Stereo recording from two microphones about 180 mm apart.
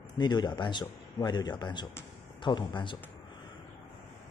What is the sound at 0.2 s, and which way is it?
A man's voice, 25° left (ahead or behind).